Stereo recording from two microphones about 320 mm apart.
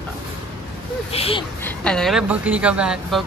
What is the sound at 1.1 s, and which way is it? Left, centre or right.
Speech, centre.